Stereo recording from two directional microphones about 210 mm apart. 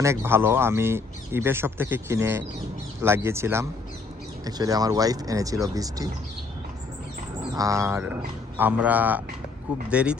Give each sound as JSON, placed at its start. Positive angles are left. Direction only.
{"t": 0.0, "sound": "speech", "side_deg": -10}
{"t": 7.5, "sound": "speech", "side_deg": -15}